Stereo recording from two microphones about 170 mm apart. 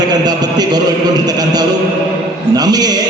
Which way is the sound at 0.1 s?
25° right (ahead or behind).